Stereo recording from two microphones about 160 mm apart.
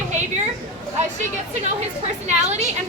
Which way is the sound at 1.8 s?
45° right (ahead or behind).